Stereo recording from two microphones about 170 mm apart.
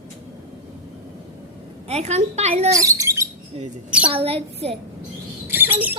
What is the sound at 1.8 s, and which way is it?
Speech, 40° right (ahead or behind).